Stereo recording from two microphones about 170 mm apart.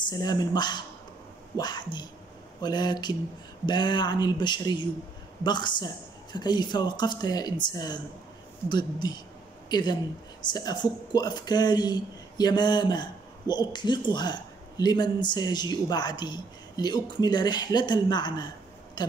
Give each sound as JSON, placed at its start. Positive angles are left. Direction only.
{"t": 0.0, "sound": "a man's voice", "side_deg": 25}